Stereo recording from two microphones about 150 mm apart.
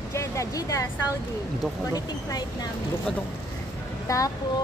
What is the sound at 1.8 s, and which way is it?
Speech, 25° left (ahead or behind).